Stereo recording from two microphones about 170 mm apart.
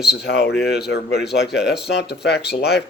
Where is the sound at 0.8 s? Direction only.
70° left (ahead or behind).